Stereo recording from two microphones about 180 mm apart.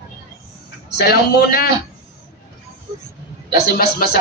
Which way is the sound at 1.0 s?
60° left (ahead or behind).